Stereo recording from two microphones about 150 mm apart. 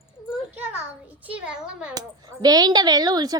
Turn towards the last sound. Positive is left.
turn(degrees=-25)  # may be behind; listen again after turning